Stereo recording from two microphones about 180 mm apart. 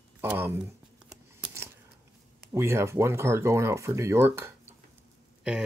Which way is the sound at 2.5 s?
15° right (ahead or behind).